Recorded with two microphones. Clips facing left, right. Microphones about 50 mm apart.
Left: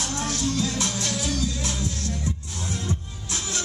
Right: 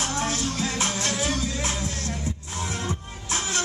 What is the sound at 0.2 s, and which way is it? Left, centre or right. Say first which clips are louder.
Music: left 4 dB; right.